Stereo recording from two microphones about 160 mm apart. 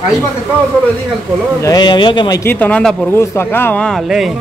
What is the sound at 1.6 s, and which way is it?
Speech, 25° left (ahead or behind).